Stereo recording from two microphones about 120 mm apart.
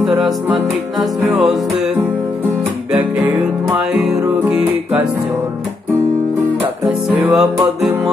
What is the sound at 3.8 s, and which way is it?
Music, 5° right (ahead or behind).